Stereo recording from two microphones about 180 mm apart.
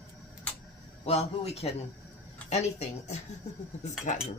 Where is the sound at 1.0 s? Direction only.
35° left (ahead or behind).